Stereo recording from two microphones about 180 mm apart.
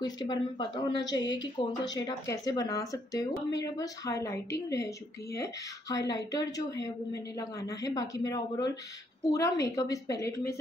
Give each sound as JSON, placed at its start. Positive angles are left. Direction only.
{"t": 0.0, "sound": "a woman's voice", "side_deg": 25}